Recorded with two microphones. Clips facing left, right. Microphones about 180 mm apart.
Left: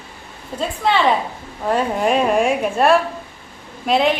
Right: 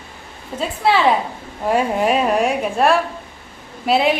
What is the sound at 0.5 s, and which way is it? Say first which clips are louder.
A woman's voice: right 1 dB; 5° right (ahead or behind).